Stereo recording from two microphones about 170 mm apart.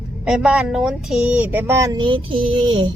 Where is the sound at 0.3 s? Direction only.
5° right (ahead or behind).